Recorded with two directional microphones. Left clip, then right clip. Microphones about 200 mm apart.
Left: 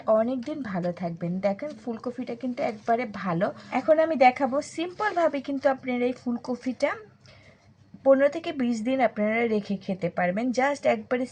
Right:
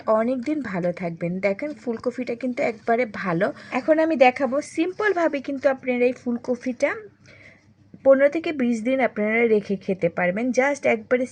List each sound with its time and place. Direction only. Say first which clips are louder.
0.0 s a woman's voice: right 2 dB; 40° right (ahead or behind)
8.0 s a woman's voice: right 4 dB; 45° right (ahead or behind)